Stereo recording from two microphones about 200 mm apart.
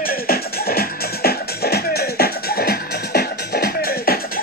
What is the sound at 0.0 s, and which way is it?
Music, 50° left (ahead or behind).